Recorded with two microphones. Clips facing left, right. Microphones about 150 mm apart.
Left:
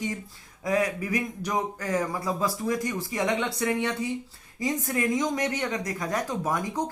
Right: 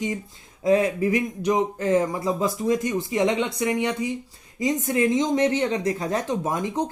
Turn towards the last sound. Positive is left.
turn(degrees=-25)  # may be behind; listen again after turning